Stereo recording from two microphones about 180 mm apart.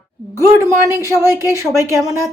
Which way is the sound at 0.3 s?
15° right (ahead or behind).